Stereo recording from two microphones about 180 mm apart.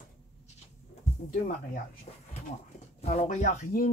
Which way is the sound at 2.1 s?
35° left (ahead or behind).